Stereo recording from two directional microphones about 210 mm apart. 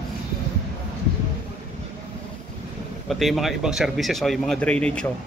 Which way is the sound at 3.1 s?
Centre (ahead or behind).